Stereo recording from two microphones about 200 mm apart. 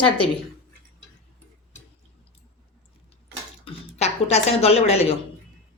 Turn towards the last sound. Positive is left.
turn(degrees=30)  # may be behind; listen again after turning